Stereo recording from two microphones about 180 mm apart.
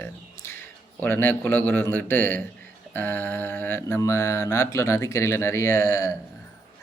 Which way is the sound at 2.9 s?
10° left (ahead or behind).